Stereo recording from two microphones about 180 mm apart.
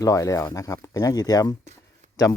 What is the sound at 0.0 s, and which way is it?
Speech, 20° left (ahead or behind).